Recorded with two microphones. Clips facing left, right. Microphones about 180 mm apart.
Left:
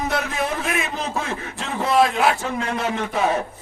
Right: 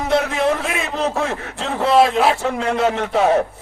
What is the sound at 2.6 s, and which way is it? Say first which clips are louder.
Speech: right 8 dB; 70° right (ahead or behind).